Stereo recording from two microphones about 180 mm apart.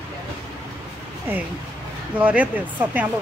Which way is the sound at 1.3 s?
10° right (ahead or behind).